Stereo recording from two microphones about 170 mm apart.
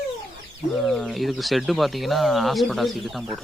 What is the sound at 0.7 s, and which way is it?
Speech, centre (ahead or behind).